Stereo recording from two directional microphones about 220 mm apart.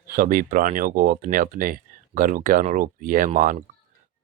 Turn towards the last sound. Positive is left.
turn(degrees=-35)  # may be behind; listen again after turning